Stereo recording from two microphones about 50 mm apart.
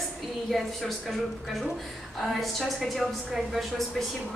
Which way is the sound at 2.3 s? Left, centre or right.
Centre.